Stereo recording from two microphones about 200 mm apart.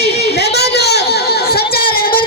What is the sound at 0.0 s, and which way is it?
Chatter, 55° left (ahead or behind).